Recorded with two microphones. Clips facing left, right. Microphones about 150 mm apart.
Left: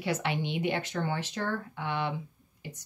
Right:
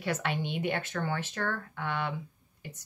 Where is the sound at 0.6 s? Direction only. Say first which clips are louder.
Left 2 dB; 50° right (ahead or behind).